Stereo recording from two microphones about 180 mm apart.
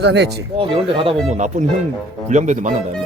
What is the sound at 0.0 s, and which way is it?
Speech, 70° right (ahead or behind).